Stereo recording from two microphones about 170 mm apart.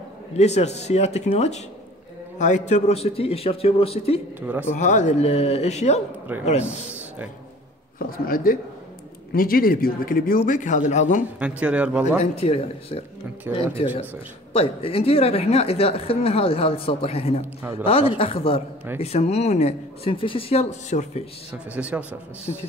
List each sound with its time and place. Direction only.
0.3 s a woman's voice: 40° left (ahead or behind)
4.4 s speech: 10° right (ahead or behind)
4.7 s a woman's voice: 45° left (ahead or behind)
8.0 s speech: 60° left (ahead or behind)
11.3 s speech: 5° right (ahead or behind)
12.2 s a woman's voice: 35° left (ahead or behind)
21.7 s speech: 5° right (ahead or behind)
22.5 s a woman's voice: 35° left (ahead or behind)